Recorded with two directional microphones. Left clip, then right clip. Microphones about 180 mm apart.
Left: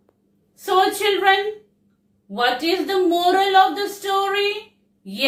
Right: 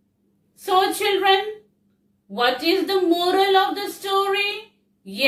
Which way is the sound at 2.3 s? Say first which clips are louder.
Even; 20° right (ahead or behind).